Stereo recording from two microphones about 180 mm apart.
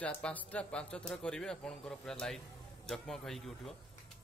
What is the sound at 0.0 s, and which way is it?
Speech, 5° left (ahead or behind).